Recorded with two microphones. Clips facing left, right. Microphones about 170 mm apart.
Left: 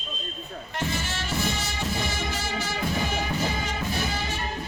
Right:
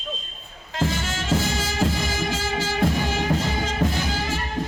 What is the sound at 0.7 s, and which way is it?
Music, 90° right.